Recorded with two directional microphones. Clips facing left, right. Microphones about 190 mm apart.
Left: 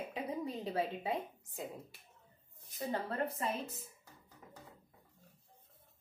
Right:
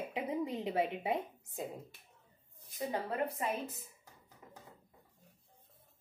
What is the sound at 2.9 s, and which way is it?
Speech, 15° right (ahead or behind).